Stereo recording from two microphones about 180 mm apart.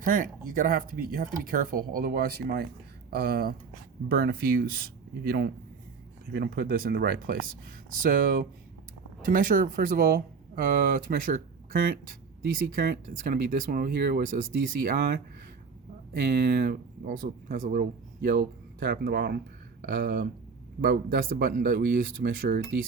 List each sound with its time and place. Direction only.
0.0 s speech: 50° right (ahead or behind)
16.2 s speech: 60° right (ahead or behind)